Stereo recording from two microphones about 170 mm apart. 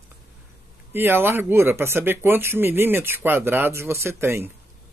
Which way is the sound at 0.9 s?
15° right (ahead or behind).